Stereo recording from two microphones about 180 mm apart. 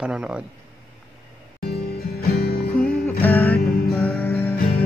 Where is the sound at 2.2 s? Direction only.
60° left (ahead or behind).